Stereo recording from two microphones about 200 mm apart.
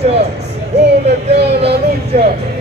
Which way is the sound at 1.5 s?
55° right (ahead or behind).